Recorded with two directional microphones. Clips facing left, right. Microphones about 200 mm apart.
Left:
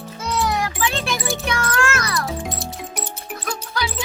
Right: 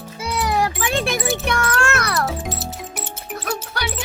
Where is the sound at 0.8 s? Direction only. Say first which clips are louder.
Right 2 dB; 55° right (ahead or behind).